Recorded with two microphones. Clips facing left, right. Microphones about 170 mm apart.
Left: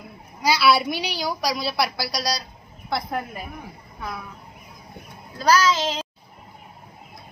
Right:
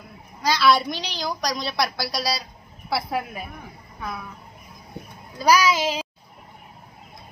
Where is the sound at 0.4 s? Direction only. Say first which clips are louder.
Even; 10° left (ahead or behind).